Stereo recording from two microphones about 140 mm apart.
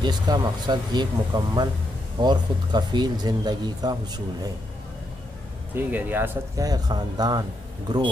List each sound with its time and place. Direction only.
0.0 s speech: 30° right (ahead or behind)
5.8 s speech: 15° right (ahead or behind)
6.6 s speech: 30° right (ahead or behind)